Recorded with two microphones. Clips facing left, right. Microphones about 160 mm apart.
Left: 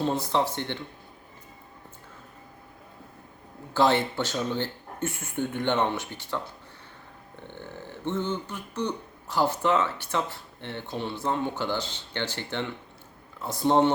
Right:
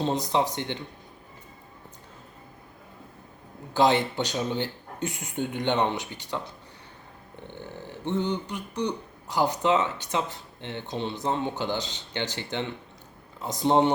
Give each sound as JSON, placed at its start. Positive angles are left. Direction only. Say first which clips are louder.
{"t": 0.0, "sound": "speech", "louder": "even", "side_deg": -15}
{"t": 3.8, "sound": "speech", "louder": "right 1 dB", "side_deg": -15}
{"t": 7.4, "sound": "speech", "louder": "right 1 dB", "side_deg": -15}